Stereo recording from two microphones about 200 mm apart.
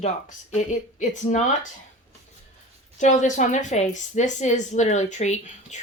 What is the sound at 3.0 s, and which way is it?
A woman's voice, 40° left (ahead or behind).